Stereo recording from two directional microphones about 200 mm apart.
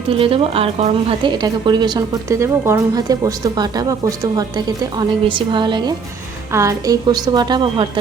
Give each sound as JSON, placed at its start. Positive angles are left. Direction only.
{"t": 0.1, "sound": "a woman's voice", "side_deg": -25}